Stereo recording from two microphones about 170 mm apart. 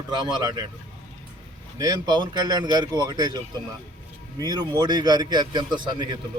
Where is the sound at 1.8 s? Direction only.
25° right (ahead or behind).